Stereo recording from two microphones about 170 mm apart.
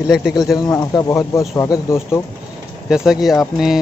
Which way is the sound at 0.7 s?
20° left (ahead or behind).